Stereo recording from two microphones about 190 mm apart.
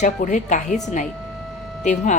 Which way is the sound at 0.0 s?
40° left (ahead or behind).